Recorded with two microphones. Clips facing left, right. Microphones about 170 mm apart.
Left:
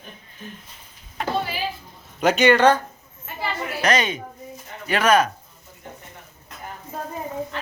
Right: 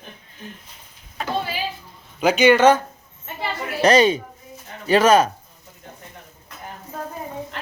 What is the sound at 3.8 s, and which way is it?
Speech, 30° right (ahead or behind).